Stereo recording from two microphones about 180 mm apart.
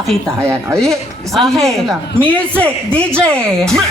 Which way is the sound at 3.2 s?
5° left (ahead or behind).